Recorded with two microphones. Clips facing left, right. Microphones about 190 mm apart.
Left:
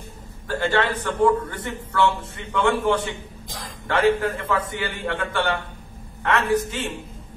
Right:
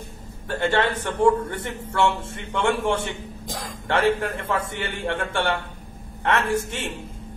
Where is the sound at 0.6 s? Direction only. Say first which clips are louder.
Even; 25° right (ahead or behind).